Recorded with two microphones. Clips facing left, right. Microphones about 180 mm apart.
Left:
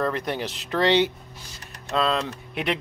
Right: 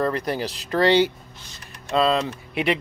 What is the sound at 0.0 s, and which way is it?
Speech, centre (ahead or behind).